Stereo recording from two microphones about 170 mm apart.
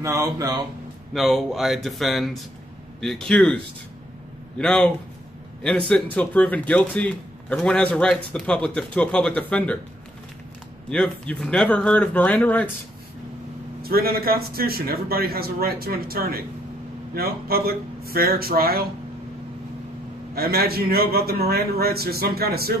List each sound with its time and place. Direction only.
0.0 s speech: 15° right (ahead or behind)
1.1 s speech: centre (ahead or behind)
10.9 s speech: 5° left (ahead or behind)
13.8 s a man's voice: 60° right (ahead or behind)
20.3 s a man's voice: 65° right (ahead or behind)